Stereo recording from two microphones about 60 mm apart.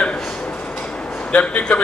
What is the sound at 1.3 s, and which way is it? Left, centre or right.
Speech, left.